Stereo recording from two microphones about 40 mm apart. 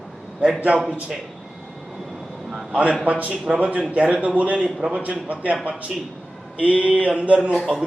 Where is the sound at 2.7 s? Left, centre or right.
Right.